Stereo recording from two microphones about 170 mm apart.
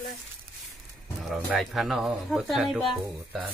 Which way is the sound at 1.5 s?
Centre (ahead or behind).